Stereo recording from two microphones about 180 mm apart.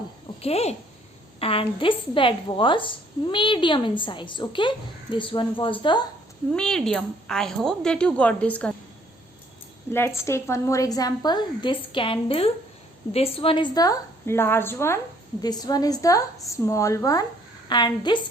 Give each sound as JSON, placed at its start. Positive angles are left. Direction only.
{"t": 0.4, "sound": "a woman's voice", "side_deg": 35}
{"t": 6.5, "sound": "a woman's voice", "side_deg": 5}
{"t": 10.2, "sound": "a woman's voice", "side_deg": 15}